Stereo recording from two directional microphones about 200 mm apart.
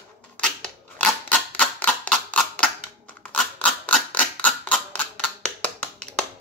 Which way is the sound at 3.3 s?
5° left (ahead or behind).